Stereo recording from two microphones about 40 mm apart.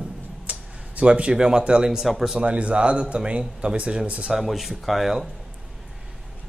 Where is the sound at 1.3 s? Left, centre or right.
Right.